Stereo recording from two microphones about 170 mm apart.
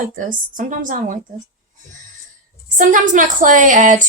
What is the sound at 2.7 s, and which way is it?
A woman's voice, 50° right (ahead or behind).